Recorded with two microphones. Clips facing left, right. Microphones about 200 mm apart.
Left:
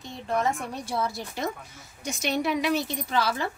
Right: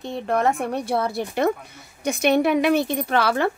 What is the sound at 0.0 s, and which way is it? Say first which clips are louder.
Speech: right 6 dB; 60° right (ahead or behind).